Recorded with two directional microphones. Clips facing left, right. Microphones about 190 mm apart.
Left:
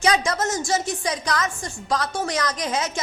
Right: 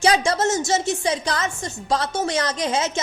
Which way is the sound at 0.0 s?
30° right (ahead or behind).